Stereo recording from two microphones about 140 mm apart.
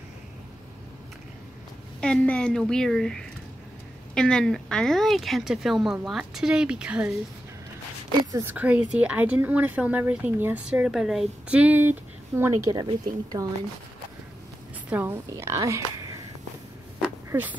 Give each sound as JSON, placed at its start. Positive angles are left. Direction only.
{"t": 2.0, "sound": "speech", "side_deg": 5}
{"t": 8.3, "sound": "speech", "side_deg": -15}
{"t": 14.9, "sound": "a woman's voice", "side_deg": -15}
{"t": 17.3, "sound": "speech", "side_deg": -10}